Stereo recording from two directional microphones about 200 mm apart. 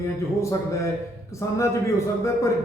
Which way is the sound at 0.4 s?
15° left (ahead or behind).